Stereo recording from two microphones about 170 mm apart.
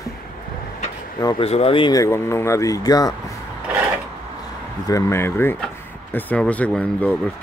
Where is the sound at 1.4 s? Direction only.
35° left (ahead or behind).